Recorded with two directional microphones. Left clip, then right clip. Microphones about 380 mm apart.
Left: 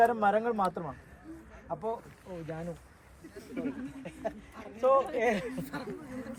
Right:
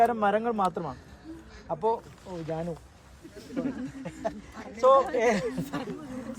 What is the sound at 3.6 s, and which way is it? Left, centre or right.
Speech, right.